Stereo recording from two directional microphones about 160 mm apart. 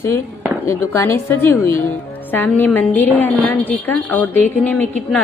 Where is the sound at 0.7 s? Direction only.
15° left (ahead or behind).